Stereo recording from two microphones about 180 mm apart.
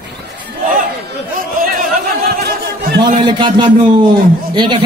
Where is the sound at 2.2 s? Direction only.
60° right (ahead or behind).